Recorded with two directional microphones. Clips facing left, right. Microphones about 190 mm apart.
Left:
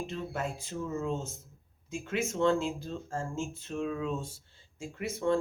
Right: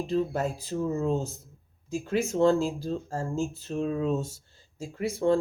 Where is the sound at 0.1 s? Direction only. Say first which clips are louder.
Right 8 dB; 35° right (ahead or behind).